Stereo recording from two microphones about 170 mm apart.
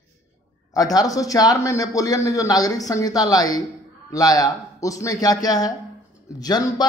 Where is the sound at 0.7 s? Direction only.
20° left (ahead or behind).